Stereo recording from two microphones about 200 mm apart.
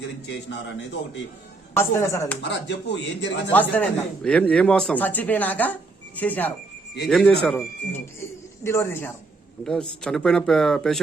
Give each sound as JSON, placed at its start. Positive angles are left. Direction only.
{"t": 0.3, "sound": "speech", "side_deg": 60}
{"t": 1.7, "sound": "a man's voice", "side_deg": 15}
{"t": 2.4, "sound": "speech", "side_deg": 60}
{"t": 3.5, "sound": "a man's voice", "side_deg": 10}